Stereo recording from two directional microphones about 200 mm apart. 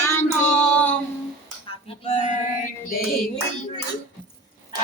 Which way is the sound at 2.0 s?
35° left (ahead or behind).